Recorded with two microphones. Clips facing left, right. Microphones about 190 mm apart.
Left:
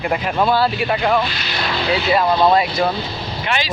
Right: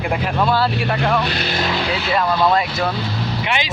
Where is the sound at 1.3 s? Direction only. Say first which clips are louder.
Right 4 dB; 45° right (ahead or behind).